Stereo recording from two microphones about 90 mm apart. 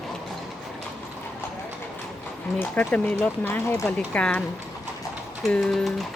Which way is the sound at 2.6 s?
20° left (ahead or behind).